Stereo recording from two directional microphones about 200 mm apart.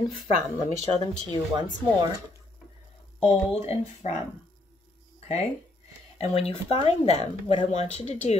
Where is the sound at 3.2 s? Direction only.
30° left (ahead or behind).